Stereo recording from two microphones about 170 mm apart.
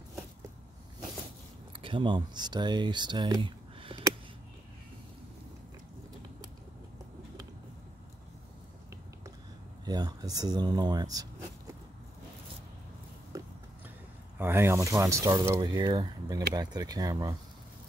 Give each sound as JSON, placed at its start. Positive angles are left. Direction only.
{"t": 1.7, "sound": "speech", "side_deg": -30}
{"t": 9.8, "sound": "speech", "side_deg": -25}
{"t": 14.4, "sound": "speech", "side_deg": -15}